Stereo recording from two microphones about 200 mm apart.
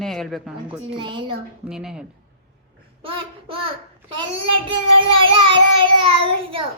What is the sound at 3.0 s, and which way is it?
A child's voice, 25° right (ahead or behind).